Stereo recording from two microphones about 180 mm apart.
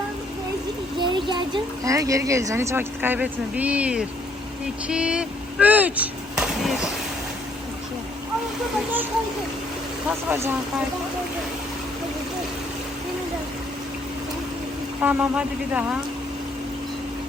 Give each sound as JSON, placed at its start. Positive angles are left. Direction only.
{"t": 0.9, "sound": "speech", "side_deg": -25}
{"t": 10.1, "sound": "speech", "side_deg": -5}
{"t": 15.0, "sound": "speech", "side_deg": -10}